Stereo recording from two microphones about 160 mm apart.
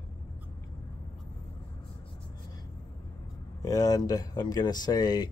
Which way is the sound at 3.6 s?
25° left (ahead or behind).